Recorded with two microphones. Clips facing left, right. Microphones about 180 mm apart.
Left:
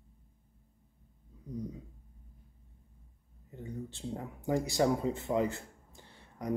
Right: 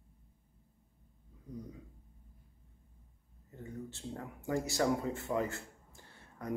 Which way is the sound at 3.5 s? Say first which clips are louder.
Left 3 dB; 20° left (ahead or behind).